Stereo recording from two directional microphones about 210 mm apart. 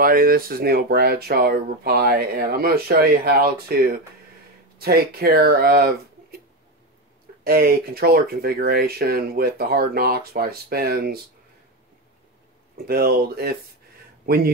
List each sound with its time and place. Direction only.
0.0 s speech: 45° right (ahead or behind)
7.4 s speech: 45° right (ahead or behind)
12.7 s speech: 45° right (ahead or behind)